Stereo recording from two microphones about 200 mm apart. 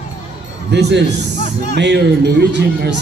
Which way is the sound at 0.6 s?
55° right (ahead or behind).